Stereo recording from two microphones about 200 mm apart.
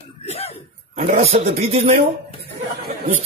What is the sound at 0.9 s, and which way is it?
Speech, 30° right (ahead or behind).